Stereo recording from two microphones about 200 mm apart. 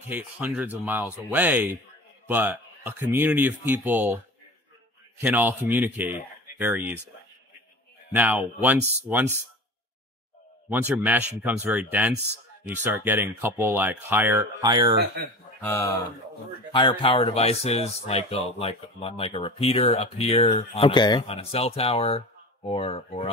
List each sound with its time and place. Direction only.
0.1 s a man's voice: 10° right (ahead or behind)
5.2 s a man's voice: 10° right (ahead or behind)
8.1 s a man's voice: 5° right (ahead or behind)
10.7 s a man's voice: 10° right (ahead or behind)
15.6 s speech: 10° left (ahead or behind)
16.7 s speech: 25° left (ahead or behind)